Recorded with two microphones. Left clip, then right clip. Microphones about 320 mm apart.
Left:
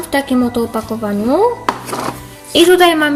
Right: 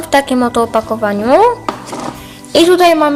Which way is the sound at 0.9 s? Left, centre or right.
Right.